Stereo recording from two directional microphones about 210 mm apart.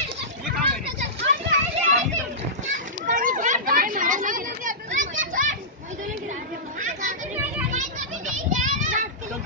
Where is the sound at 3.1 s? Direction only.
40° right (ahead or behind).